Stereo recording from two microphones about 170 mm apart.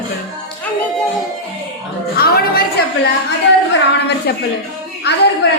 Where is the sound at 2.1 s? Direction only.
60° left (ahead or behind).